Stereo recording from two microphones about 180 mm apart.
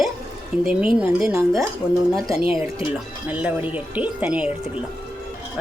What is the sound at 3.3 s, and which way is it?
A woman's voice, 10° right (ahead or behind).